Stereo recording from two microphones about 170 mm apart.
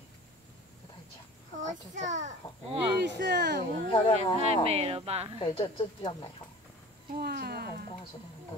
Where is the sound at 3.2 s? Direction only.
80° right.